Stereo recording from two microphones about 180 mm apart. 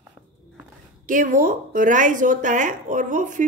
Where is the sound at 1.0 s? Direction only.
45° right (ahead or behind).